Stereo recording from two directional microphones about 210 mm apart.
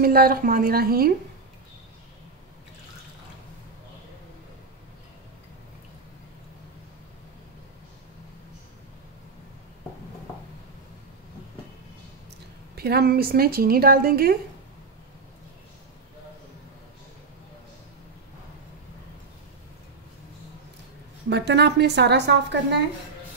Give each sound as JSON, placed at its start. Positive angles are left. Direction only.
{"t": 0.0, "sound": "a woman's voice", "side_deg": -45}
{"t": 12.7, "sound": "a woman's voice", "side_deg": -50}
{"t": 21.3, "sound": "a woman's voice", "side_deg": -55}